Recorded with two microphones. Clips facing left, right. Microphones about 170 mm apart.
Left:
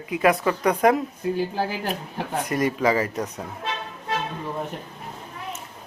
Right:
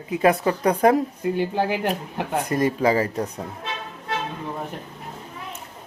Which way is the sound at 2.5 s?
30° right (ahead or behind).